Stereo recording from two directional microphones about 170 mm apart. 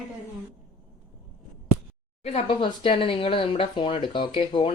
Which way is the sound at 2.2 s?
35° left (ahead or behind).